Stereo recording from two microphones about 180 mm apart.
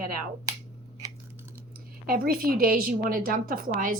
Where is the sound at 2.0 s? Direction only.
55° right (ahead or behind).